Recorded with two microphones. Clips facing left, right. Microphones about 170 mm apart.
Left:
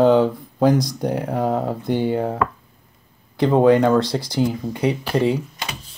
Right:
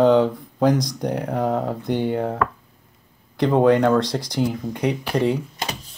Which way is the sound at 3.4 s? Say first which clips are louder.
Left 2 dB; 5° left (ahead or behind).